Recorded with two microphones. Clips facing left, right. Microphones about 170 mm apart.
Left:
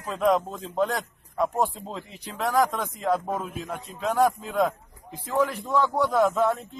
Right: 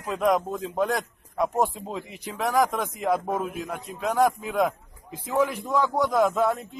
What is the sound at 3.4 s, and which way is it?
Speech, centre (ahead or behind).